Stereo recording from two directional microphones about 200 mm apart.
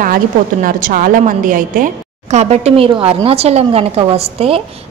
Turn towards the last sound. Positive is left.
turn(degrees=-30)  # may be behind; listen again after turning